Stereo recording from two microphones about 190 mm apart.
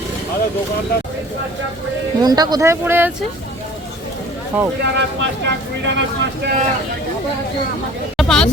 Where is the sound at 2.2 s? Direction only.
20° right (ahead or behind).